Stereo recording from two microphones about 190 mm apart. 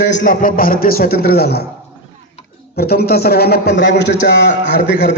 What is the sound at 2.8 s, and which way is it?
A man's voice, 55° left (ahead or behind).